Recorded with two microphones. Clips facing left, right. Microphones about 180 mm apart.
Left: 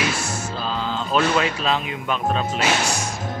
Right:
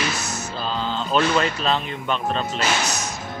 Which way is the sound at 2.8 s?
30° left (ahead or behind).